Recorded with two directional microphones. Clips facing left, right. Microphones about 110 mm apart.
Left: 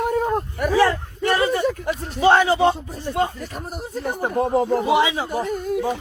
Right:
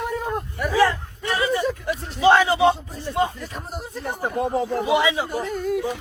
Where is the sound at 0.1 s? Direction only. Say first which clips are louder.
Left 5 dB; 45° left (ahead or behind).